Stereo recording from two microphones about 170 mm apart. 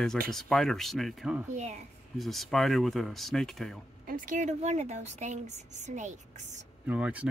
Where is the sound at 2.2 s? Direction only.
Centre (ahead or behind).